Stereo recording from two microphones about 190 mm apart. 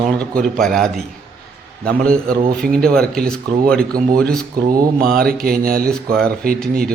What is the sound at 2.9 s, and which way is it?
A man's voice, 5° left (ahead or behind).